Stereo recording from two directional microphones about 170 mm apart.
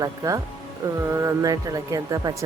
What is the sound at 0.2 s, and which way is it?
Speech, 20° right (ahead or behind).